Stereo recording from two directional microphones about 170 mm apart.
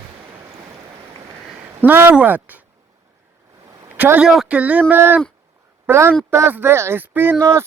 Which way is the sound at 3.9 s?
10° right (ahead or behind).